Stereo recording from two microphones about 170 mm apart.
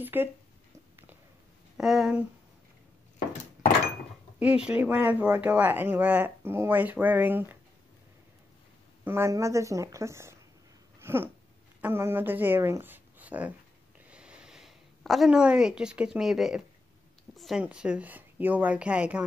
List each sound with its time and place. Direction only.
0.0 s speech: 10° right (ahead or behind)
1.8 s speech: centre (ahead or behind)
4.4 s speech: 5° right (ahead or behind)
9.0 s speech: 15° right (ahead or behind)
11.0 s a sound: 15° right (ahead or behind)
11.8 s speech: 15° right (ahead or behind)